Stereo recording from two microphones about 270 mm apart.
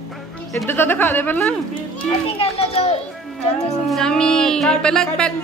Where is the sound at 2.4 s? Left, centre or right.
Left.